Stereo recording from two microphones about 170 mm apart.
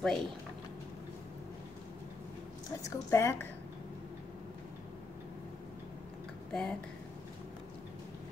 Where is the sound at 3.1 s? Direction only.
15° left (ahead or behind).